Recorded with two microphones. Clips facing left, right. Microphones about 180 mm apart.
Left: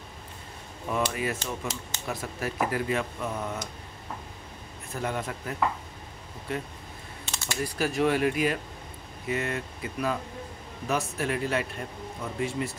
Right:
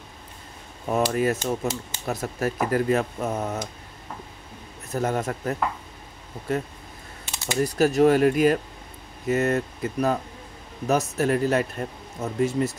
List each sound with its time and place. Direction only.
0.8 s speech: 45° right (ahead or behind)
4.9 s speech: 45° right (ahead or behind)